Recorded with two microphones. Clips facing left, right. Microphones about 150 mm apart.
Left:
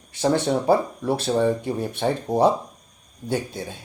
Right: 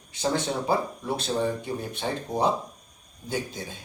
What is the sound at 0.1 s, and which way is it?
Speech, 60° left (ahead or behind).